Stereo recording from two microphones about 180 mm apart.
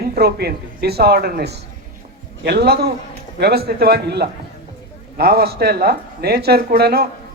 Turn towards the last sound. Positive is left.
turn(degrees=-60)  # may be behind; listen again after turning